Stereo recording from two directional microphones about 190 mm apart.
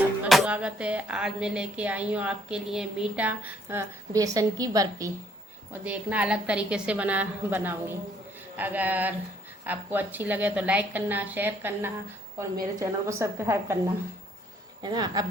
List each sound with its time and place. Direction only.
0.3 s a woman's voice: 5° right (ahead or behind); by 5.1 s 20° right (ahead or behind)
5.8 s a woman's voice: 5° right (ahead or behind)